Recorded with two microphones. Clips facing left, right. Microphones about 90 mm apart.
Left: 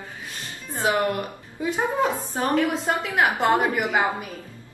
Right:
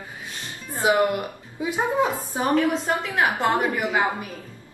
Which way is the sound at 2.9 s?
5° left (ahead or behind).